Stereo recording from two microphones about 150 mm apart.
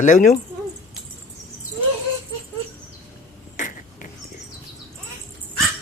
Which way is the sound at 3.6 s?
55° left (ahead or behind).